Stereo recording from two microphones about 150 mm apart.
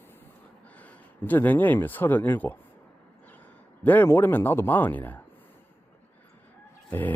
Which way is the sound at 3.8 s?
10° left (ahead or behind).